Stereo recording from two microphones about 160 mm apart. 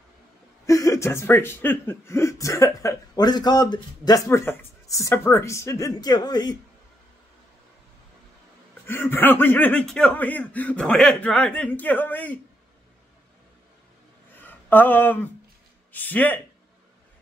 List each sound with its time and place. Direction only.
0.7 s speech: 20° left (ahead or behind)
8.8 s speech: 15° left (ahead or behind)
14.4 s a sound: 10° left (ahead or behind)
15.9 s speech: 10° left (ahead or behind)